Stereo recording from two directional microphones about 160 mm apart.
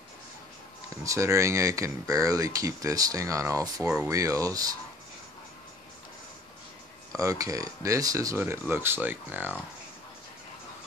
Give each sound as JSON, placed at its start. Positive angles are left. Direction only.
{"t": 1.0, "sound": "speech", "side_deg": -20}
{"t": 7.2, "sound": "speech", "side_deg": -20}